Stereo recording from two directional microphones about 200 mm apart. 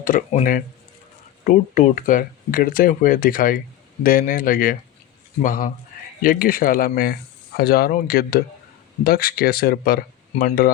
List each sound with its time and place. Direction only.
0.0 s speech: 45° left (ahead or behind)